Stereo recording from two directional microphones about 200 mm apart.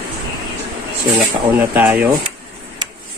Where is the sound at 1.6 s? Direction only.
10° right (ahead or behind).